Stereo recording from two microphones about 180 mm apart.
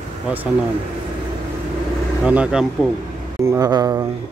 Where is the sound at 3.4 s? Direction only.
20° right (ahead or behind).